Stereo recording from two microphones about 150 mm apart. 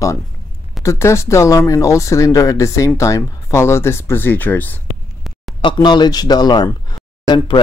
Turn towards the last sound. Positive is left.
turn(degrees=30)  # may be behind; listen again after turning